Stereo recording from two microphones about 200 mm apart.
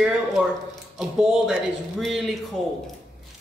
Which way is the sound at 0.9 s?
5° right (ahead or behind).